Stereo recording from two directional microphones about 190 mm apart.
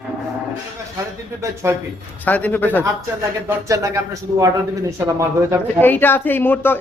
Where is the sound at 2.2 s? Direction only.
10° left (ahead or behind).